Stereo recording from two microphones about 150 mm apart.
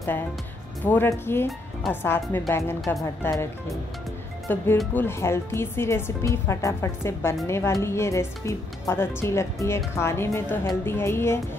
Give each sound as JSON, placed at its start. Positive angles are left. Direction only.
{"t": 0.8, "sound": "speech", "side_deg": 15}
{"t": 4.5, "sound": "speech", "side_deg": 15}